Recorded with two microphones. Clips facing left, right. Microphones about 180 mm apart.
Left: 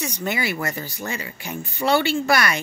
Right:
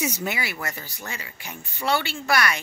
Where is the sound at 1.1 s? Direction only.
50° left (ahead or behind).